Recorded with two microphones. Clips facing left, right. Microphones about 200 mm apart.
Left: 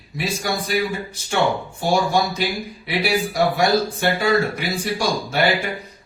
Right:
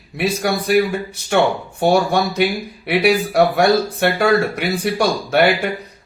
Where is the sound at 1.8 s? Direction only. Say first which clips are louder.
Right 4 dB; 60° right (ahead or behind).